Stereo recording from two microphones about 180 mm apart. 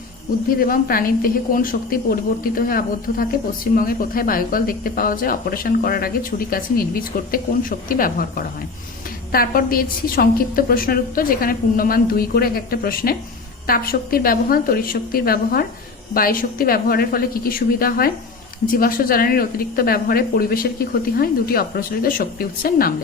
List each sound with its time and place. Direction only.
0.6 s a woman's voice: 55° left (ahead or behind)